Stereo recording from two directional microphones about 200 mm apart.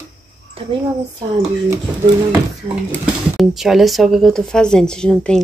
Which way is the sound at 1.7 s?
20° right (ahead or behind).